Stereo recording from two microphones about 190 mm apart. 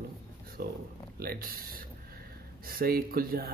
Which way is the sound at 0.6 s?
55° right (ahead or behind).